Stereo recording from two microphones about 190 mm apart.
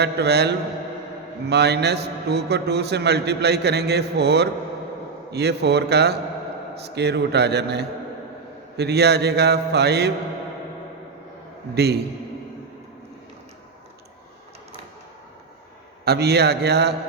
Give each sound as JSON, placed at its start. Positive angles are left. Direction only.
{"t": 0.0, "sound": "a man's voice", "side_deg": -60}
{"t": 11.7, "sound": "a man's voice", "side_deg": -60}
{"t": 16.0, "sound": "a man's voice", "side_deg": -60}